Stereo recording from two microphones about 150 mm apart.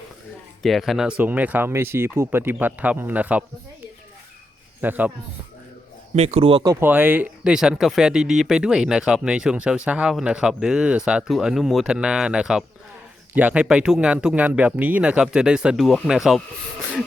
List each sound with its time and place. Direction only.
0.6 s speech: centre (ahead or behind)
4.8 s speech: 10° right (ahead or behind)
6.1 s speech: 45° right (ahead or behind)
6.7 s speech: 15° right (ahead or behind)